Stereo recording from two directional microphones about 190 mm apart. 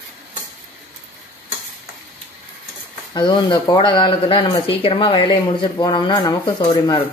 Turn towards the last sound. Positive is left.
turn(degrees=25)  # may be behind; listen again after turning